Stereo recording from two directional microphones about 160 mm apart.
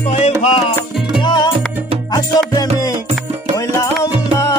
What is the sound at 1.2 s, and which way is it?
Music, 30° left (ahead or behind).